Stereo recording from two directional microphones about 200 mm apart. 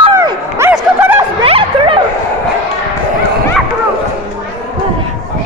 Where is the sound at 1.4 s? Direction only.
25° right (ahead or behind).